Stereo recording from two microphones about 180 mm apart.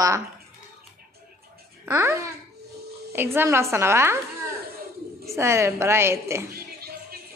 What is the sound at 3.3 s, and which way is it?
Speech, 15° right (ahead or behind).